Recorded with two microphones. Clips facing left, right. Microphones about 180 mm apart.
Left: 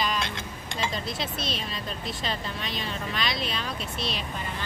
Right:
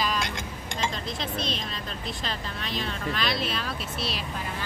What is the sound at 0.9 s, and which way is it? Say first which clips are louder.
Speech: even; 5° left (ahead or behind).